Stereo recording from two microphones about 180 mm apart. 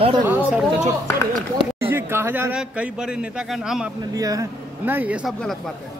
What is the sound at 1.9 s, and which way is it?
A man's voice, 15° right (ahead or behind).